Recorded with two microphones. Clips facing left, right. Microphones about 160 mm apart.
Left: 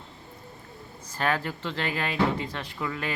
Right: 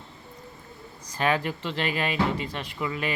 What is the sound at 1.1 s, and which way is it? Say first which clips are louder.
Speech: right 2 dB; 15° right (ahead or behind).